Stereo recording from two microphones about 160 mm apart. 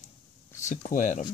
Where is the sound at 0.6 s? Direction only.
55° left (ahead or behind).